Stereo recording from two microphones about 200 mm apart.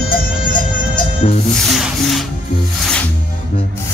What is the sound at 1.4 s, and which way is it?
Music, centre (ahead or behind).